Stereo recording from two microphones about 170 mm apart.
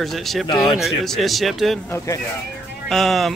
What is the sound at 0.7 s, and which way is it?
Speech, centre (ahead or behind).